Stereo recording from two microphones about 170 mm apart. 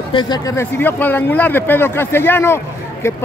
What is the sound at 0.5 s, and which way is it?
Speech, 10° left (ahead or behind).